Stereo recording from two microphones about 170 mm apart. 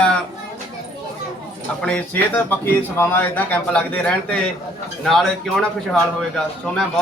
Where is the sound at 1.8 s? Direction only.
10° left (ahead or behind).